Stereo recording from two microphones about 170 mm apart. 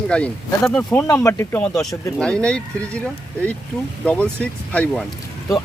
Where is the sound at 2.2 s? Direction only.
5° left (ahead or behind).